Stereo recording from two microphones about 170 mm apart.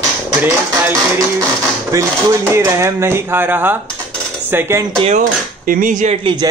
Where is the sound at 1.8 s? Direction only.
20° right (ahead or behind).